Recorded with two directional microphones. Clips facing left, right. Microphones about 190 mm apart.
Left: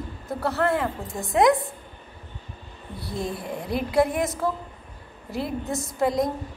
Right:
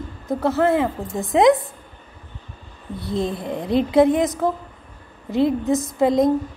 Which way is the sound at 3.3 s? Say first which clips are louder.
Right 6 dB; 20° right (ahead or behind).